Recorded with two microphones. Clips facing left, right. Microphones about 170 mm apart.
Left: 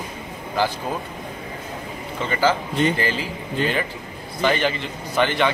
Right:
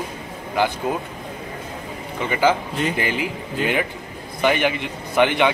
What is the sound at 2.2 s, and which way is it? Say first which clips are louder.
A man's voice: right 2 dB; 15° right (ahead or behind).